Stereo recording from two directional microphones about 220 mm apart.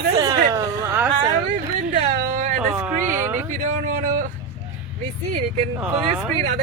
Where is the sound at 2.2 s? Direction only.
35° right (ahead or behind).